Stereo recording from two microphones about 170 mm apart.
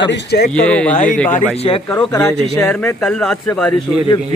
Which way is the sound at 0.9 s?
50° left (ahead or behind).